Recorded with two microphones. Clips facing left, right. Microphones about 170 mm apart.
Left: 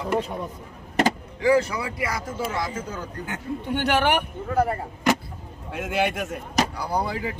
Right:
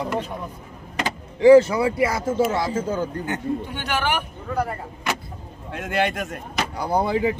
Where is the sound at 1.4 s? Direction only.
25° right (ahead or behind).